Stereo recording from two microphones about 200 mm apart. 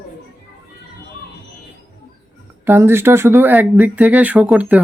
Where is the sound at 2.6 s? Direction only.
10° right (ahead or behind).